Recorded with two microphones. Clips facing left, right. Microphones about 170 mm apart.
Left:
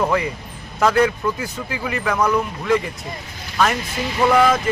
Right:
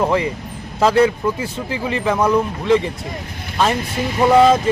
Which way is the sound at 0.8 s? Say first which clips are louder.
Right 3 dB; 30° right (ahead or behind).